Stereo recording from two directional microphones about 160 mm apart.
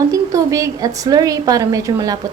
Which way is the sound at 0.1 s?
20° right (ahead or behind).